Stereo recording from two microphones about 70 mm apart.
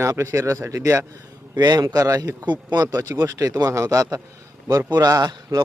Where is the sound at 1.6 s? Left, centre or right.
Right.